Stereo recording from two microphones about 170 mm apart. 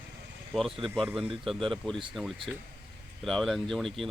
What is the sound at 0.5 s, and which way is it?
Speech, 5° left (ahead or behind).